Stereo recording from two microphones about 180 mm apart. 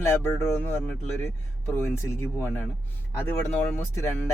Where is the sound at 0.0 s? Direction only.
15° left (ahead or behind).